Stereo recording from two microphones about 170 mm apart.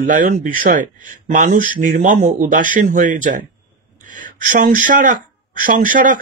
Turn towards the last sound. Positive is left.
turn(degrees=-50)  # may be behind; listen again after turning